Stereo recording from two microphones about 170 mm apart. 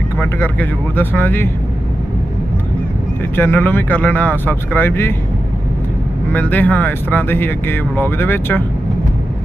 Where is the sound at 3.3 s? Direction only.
15° left (ahead or behind).